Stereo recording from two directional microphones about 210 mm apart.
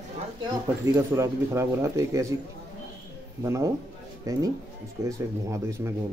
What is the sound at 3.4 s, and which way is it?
Speech, 15° right (ahead or behind).